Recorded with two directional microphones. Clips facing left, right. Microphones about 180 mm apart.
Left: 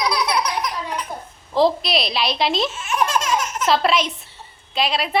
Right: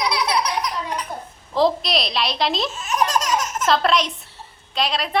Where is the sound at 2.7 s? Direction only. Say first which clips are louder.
Even; 40° right (ahead or behind).